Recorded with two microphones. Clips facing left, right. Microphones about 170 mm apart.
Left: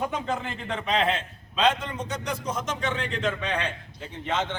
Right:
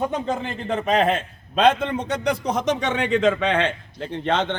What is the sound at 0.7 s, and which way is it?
A man's voice, 45° right (ahead or behind).